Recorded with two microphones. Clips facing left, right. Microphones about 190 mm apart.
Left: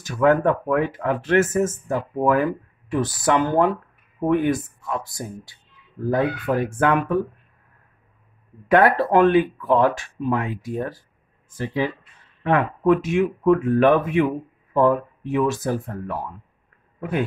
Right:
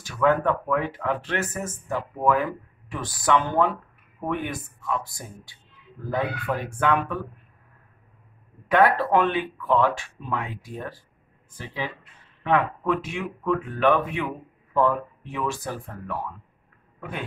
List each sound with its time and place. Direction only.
0.0 s speech: 45° left (ahead or behind)
8.6 s speech: 45° left (ahead or behind)